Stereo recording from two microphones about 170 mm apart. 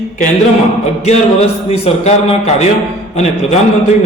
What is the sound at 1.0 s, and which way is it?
A man's voice, 40° left (ahead or behind).